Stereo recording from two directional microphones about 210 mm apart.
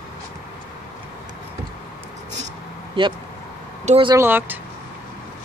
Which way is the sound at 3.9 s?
25° right (ahead or behind).